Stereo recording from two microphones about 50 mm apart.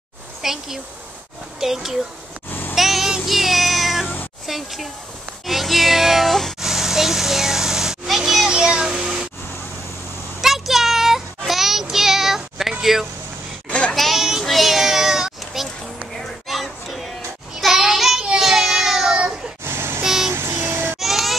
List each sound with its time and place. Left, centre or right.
0.4 s a child's voice: centre
2.7 s meow: centre
4.5 s speech: centre
5.5 s music: centre
6.6 s children playing: centre
8.5 s a sound: centre
10.4 s child singing: centre
13.7 s a sound: left
13.9 s a sound: centre
17.6 s child singing: centre
19.6 s a sound: right
20.0 s child singing: centre
20.3 s child singing: right
21.0 s baby cry: centre